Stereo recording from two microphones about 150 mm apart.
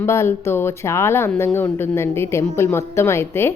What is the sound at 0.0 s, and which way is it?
Speech, 15° left (ahead or behind).